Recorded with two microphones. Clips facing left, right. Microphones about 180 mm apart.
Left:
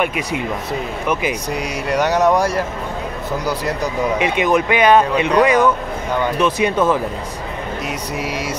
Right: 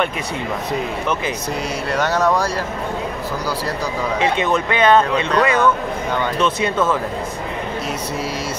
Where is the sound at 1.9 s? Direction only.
15° left (ahead or behind).